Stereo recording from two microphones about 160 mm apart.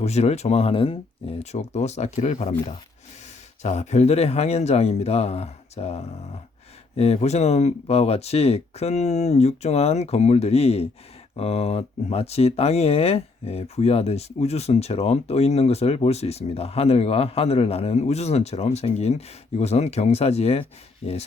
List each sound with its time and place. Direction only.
0.0 s speech: 45° left (ahead or behind)